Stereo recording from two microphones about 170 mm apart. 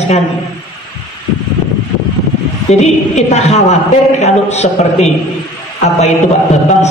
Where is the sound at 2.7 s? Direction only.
40° left (ahead or behind).